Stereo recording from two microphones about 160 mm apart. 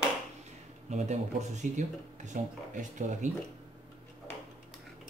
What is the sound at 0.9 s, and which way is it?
Speech, 45° right (ahead or behind).